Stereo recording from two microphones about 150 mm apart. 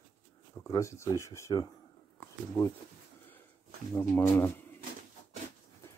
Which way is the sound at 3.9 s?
15° left (ahead or behind).